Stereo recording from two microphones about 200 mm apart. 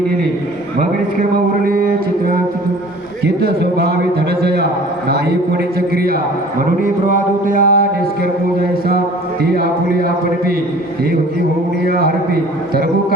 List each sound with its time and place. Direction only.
1.6 s a man's voice: 45° right (ahead or behind)
5.0 s a man's voice: 55° right (ahead or behind)
9.4 s a man's voice: 50° right (ahead or behind)